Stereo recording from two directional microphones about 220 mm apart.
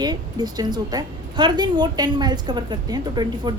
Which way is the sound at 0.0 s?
20° right (ahead or behind).